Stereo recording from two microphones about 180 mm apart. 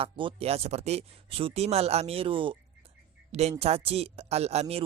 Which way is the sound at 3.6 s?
35° right (ahead or behind).